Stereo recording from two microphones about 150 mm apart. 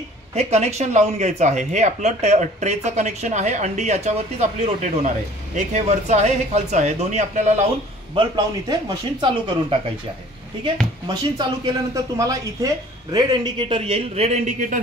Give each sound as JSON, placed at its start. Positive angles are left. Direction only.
{"t": 0.3, "sound": "speech", "side_deg": -45}
{"t": 8.1, "sound": "speech", "side_deg": -30}
{"t": 11.3, "sound": "speech", "side_deg": -25}